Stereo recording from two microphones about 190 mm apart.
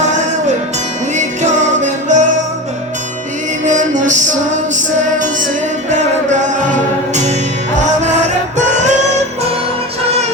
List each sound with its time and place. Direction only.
0.0 s music: 40° right (ahead or behind)
3.6 s music: 40° right (ahead or behind)
6.7 s music: 40° right (ahead or behind)
8.5 s music: 40° right (ahead or behind)